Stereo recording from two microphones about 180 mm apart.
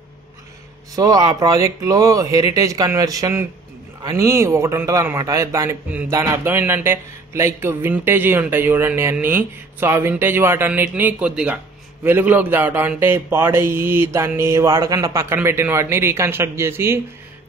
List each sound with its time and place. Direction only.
0.9 s a man's voice: 20° right (ahead or behind)